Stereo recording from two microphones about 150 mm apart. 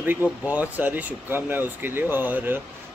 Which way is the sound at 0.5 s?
10° right (ahead or behind).